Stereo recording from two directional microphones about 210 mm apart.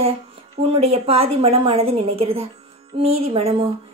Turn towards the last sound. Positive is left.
turn(degrees=-25)  # may be behind; listen again after turning